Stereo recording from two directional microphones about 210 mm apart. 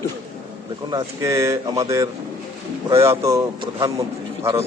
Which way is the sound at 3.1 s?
15° right (ahead or behind).